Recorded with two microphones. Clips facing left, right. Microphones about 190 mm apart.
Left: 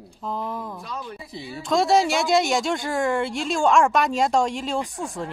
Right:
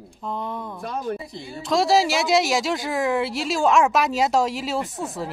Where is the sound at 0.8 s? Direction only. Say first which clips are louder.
Right 7 dB; 50° right (ahead or behind).